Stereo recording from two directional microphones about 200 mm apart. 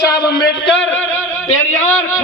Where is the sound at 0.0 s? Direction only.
55° left (ahead or behind).